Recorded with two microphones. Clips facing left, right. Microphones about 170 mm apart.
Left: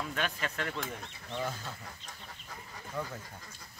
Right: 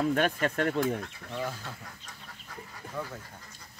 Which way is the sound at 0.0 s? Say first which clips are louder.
Right 9 dB; 50° right (ahead or behind).